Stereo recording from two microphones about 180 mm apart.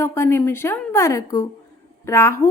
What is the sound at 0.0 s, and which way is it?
A woman's voice, 15° left (ahead or behind).